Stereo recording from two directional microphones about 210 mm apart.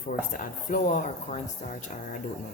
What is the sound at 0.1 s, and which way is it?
Speech, 40° left (ahead or behind).